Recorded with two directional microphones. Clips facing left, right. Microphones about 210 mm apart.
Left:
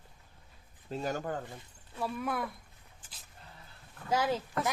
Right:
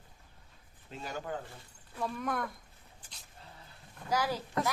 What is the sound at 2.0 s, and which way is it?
Speech, 5° left (ahead or behind).